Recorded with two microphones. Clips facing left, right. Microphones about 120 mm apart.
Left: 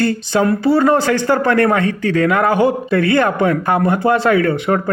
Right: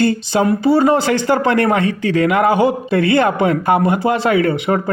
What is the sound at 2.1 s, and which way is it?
A man's voice, 25° right (ahead or behind).